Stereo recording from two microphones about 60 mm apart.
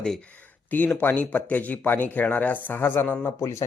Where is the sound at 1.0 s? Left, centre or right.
Left.